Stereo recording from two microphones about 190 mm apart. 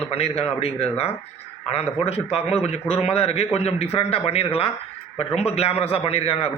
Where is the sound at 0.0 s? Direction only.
30° left (ahead or behind).